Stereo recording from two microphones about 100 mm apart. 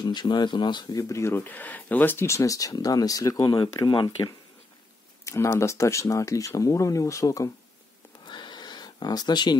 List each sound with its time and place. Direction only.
0.0 s speech: 45° left (ahead or behind)
1.0 s speech: 30° left (ahead or behind)
3.5 s speech: 50° left (ahead or behind)
5.2 s speech: 30° left (ahead or behind)
8.3 s a sound: 50° left (ahead or behind)